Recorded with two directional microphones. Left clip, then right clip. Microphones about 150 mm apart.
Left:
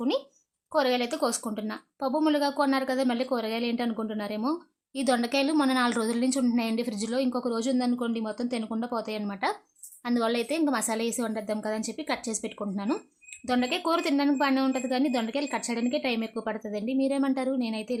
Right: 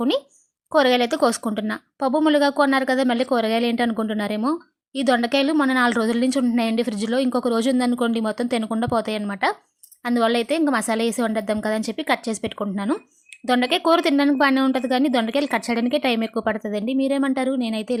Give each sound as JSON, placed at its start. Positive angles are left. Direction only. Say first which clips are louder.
{"t": 0.7, "sound": "a woman's voice", "louder": "right 8 dB", "side_deg": -30}